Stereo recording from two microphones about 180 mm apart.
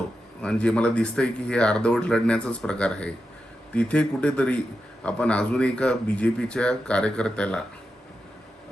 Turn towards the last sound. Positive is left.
turn(degrees=5)  # may be behind; listen again after turning